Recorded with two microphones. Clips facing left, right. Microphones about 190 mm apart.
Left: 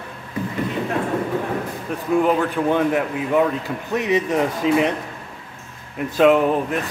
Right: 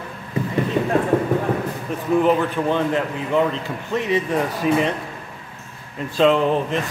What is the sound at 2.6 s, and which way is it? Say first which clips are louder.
Speech: left 2 dB; 15° left (ahead or behind).